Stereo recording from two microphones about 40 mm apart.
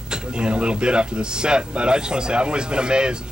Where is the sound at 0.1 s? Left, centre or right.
Right.